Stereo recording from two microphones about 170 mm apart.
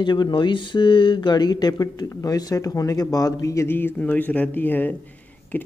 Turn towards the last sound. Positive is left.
turn(degrees=10)  # may be behind; listen again after turning